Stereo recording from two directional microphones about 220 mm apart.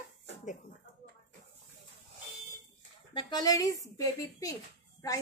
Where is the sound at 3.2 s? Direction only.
20° left (ahead or behind).